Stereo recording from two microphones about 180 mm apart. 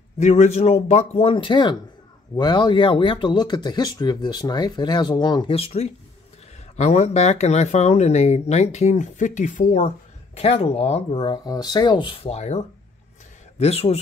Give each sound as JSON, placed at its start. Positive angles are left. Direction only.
{"t": 0.2, "sound": "speech", "side_deg": 40}